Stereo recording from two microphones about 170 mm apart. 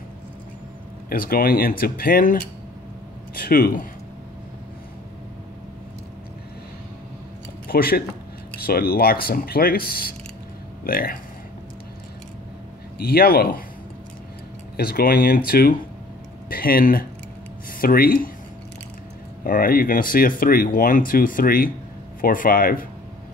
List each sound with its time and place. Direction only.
1.1 s speech: 60° left (ahead or behind)
3.3 s speech: 60° left (ahead or behind)
7.6 s speech: 60° left (ahead or behind)
13.0 s speech: 60° left (ahead or behind)
14.8 s speech: 65° left (ahead or behind)
19.4 s speech: 55° left (ahead or behind)